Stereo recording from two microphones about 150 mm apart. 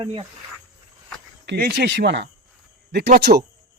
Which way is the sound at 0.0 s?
35° right (ahead or behind).